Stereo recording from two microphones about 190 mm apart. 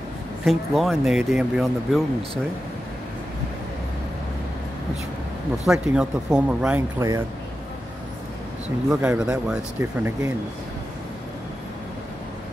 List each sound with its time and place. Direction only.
0.5 s speech: centre (ahead or behind)
5.7 s speech: 5° right (ahead or behind)
7.0 s speech: 15° right (ahead or behind)
8.9 s speech: 5° right (ahead or behind)